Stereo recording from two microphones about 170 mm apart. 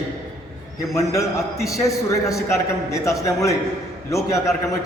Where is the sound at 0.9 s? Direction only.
20° left (ahead or behind).